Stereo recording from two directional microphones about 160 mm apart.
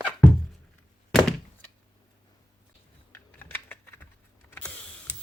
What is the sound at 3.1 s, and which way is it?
Typing, 15° left (ahead or behind).